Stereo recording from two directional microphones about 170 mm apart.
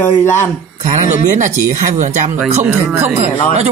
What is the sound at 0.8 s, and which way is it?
Speech, 45° right (ahead or behind).